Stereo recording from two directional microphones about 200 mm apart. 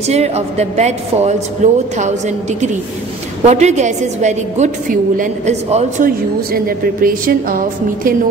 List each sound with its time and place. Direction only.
0.0 s a woman's voice: 30° right (ahead or behind)
3.4 s a woman's voice: 35° right (ahead or behind)